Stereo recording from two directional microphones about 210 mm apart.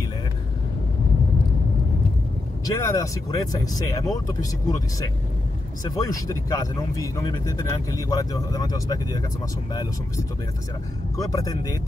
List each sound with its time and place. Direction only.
2.6 s speech: 15° left (ahead or behind)
11.1 s speech: 15° left (ahead or behind)